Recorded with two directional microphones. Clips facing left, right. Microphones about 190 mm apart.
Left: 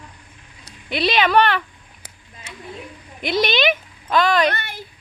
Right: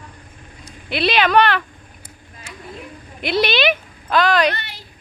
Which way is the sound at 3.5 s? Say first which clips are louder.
Right 1 dB; 20° left (ahead or behind).